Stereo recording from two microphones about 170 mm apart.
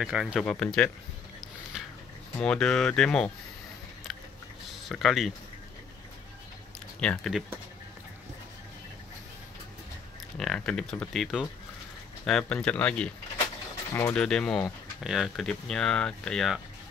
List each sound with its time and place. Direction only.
0.0 s speech: 5° right (ahead or behind)
2.3 s speech: 5° left (ahead or behind)
4.6 s speech: centre (ahead or behind)
7.0 s speech: 5° left (ahead or behind)
10.3 s speech: 5° left (ahead or behind)